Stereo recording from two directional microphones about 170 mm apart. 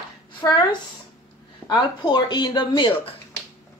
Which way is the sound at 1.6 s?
25° left (ahead or behind).